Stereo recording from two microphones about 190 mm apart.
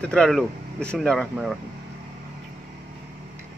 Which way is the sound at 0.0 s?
5° left (ahead or behind).